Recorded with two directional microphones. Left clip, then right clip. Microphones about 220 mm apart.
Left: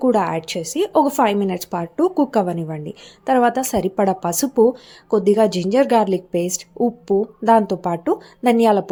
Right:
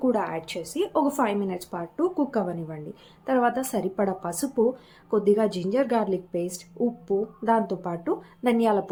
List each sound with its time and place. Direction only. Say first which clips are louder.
0.0 s a woman's voice: left 8 dB; 35° left (ahead or behind)